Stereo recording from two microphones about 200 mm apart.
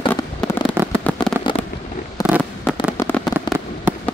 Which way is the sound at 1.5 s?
25° left (ahead or behind).